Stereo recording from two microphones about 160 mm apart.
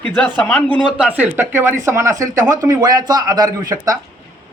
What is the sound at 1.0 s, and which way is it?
Speech, 10° right (ahead or behind).